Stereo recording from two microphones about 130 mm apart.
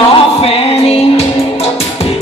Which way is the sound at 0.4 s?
50° left (ahead or behind).